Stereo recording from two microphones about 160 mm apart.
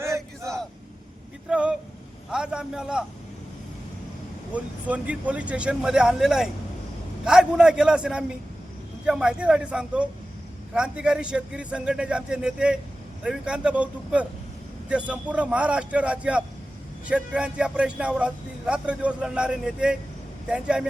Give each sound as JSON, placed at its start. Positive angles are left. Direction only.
{"t": 0.0, "sound": "vehicle", "side_deg": -20}
{"t": 1.5, "sound": "a sound", "side_deg": -5}
{"t": 4.5, "sound": "a man's voice", "side_deg": -10}